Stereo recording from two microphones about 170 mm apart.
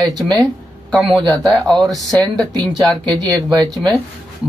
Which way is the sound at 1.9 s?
20° right (ahead or behind).